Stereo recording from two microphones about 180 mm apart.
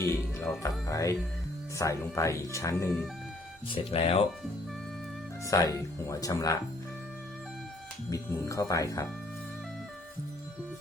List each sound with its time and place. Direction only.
0.0 s speech: 15° left (ahead or behind)
3.7 s speech: 30° left (ahead or behind)
5.5 s speech: 20° left (ahead or behind)
8.1 s speech: 20° left (ahead or behind)